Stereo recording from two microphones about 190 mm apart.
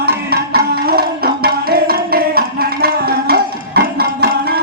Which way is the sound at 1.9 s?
50° right (ahead or behind).